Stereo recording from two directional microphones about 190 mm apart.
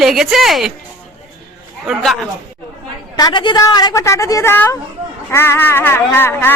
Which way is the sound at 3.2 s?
20° left (ahead or behind).